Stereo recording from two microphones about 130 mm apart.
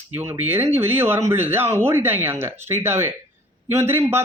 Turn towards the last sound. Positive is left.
turn(degrees=-20)  # may be behind; listen again after turning